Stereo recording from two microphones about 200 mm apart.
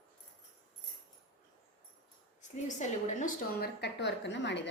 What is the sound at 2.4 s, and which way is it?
A woman's voice, 35° left (ahead or behind).